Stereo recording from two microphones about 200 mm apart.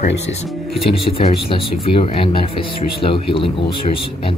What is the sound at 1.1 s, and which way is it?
Speech, 30° left (ahead or behind).